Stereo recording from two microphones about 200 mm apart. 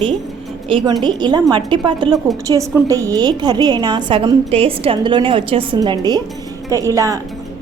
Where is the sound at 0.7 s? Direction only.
25° right (ahead or behind).